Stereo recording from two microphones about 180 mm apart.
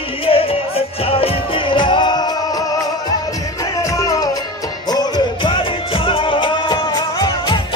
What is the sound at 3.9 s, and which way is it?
Music, 20° left (ahead or behind).